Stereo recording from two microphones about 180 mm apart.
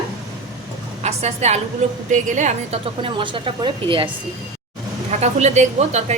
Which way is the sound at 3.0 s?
30° right (ahead or behind).